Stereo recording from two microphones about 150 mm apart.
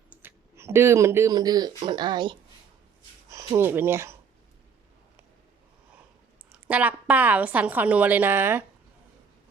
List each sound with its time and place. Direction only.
0.1 s speech: 15° right (ahead or behind)
6.7 s a woman's voice: 10° right (ahead or behind)